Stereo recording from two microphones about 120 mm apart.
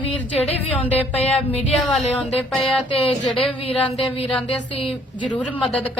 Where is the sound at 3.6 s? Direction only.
55° left (ahead or behind).